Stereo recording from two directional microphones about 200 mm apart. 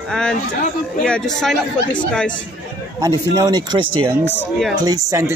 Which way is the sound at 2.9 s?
20° right (ahead or behind).